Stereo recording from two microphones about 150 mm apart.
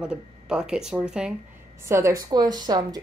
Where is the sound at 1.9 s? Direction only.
20° right (ahead or behind).